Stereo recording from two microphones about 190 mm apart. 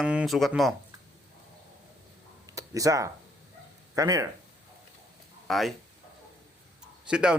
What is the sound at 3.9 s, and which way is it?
Speech, 15° right (ahead or behind).